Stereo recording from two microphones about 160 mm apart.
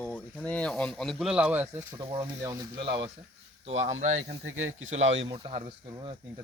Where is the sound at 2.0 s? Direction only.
30° right (ahead or behind).